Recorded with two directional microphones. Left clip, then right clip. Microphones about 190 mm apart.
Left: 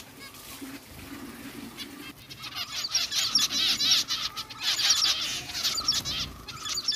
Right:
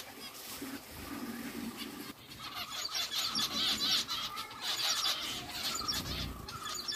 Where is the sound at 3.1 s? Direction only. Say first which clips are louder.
Left 8 dB; 10° left (ahead or behind).